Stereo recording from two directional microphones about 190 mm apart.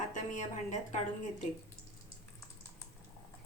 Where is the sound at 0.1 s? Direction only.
40° left (ahead or behind).